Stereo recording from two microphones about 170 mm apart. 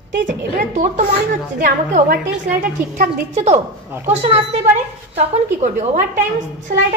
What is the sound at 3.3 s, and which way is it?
A woman's voice, 40° right (ahead or behind).